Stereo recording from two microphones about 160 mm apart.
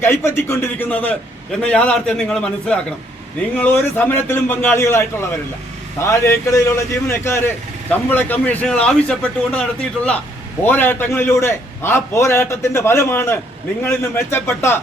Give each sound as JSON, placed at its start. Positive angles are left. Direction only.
{"t": 0.0, "sound": "a man's voice", "side_deg": 15}